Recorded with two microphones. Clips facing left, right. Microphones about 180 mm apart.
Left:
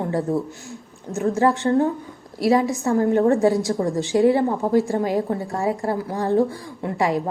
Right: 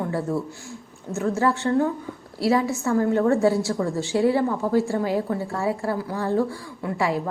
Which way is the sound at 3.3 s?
20° left (ahead or behind).